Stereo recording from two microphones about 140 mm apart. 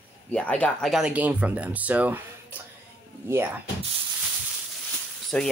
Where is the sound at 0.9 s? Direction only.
5° right (ahead or behind).